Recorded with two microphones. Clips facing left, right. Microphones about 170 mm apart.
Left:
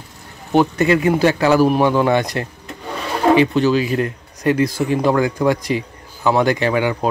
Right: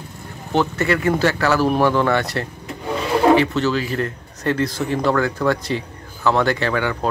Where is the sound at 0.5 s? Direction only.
15° left (ahead or behind).